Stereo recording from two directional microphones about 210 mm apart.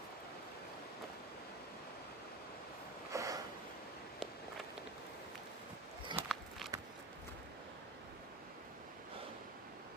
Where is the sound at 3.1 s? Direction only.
15° right (ahead or behind).